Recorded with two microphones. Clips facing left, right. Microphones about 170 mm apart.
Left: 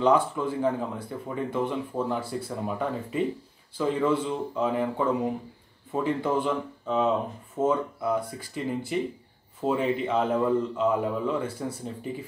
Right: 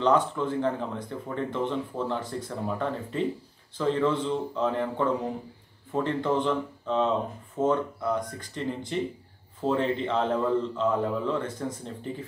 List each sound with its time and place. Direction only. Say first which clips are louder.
0.0 s speech: left 1 dB; 10° left (ahead or behind)